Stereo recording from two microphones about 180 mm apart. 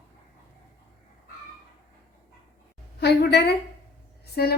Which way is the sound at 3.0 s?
65° left (ahead or behind).